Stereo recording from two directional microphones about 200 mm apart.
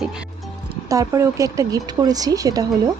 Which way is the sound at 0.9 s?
15° right (ahead or behind).